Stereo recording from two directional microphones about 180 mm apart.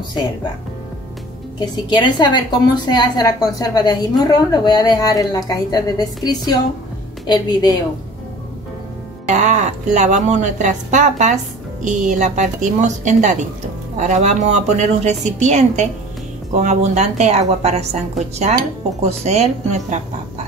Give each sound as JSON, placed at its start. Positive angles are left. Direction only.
{"t": 1.9, "sound": "a woman's voice", "side_deg": 25}
{"t": 9.3, "sound": "a woman's voice", "side_deg": -40}
{"t": 19.0, "sound": "a woman's voice", "side_deg": -35}